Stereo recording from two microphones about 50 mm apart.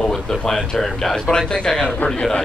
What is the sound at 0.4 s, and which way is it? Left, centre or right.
Speech, centre.